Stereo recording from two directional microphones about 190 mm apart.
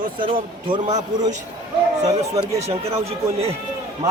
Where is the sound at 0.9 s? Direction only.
20° right (ahead or behind).